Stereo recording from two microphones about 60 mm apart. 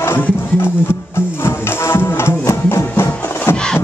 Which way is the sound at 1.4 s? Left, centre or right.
Left.